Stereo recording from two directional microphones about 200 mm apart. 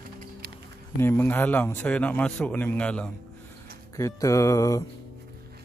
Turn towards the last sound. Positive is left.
turn(degrees=15)  # may be behind; listen again after turning